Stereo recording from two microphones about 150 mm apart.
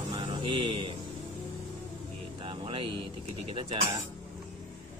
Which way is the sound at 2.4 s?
35° right (ahead or behind).